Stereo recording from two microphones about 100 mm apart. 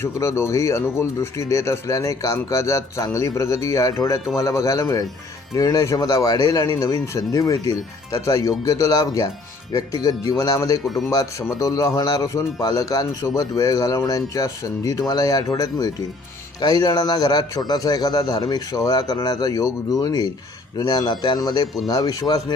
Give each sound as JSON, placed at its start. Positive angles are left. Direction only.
{"t": 0.0, "sound": "speech", "side_deg": 25}